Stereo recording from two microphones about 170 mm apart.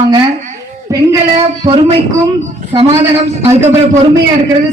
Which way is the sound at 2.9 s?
15° right (ahead or behind).